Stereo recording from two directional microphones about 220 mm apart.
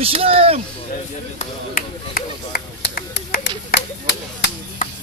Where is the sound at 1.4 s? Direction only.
40° left (ahead or behind).